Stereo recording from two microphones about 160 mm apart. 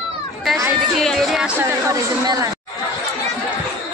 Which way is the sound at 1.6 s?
20° right (ahead or behind).